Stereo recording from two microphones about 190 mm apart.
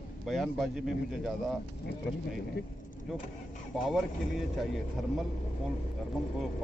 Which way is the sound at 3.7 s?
Centre (ahead or behind).